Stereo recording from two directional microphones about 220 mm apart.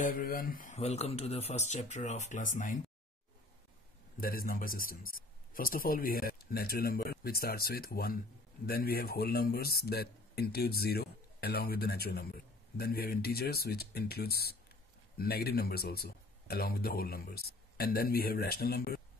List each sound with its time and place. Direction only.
0.0 s speech: 40° left (ahead or behind)
4.2 s speech: 40° left (ahead or behind)